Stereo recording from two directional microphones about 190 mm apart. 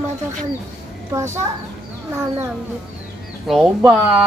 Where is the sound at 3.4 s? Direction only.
Centre (ahead or behind).